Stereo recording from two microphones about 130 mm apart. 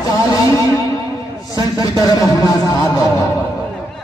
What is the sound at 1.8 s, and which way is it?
Speech, 25° left (ahead or behind).